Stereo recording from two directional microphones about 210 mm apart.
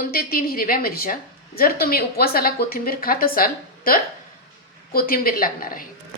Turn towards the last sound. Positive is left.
turn(degrees=45)  # may be behind; listen again after turning